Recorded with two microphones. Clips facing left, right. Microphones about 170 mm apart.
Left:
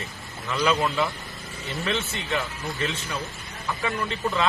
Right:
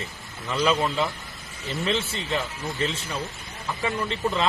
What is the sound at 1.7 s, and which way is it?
Speech, 30° right (ahead or behind).